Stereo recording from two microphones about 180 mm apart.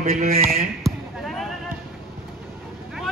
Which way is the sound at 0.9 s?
Centre (ahead or behind).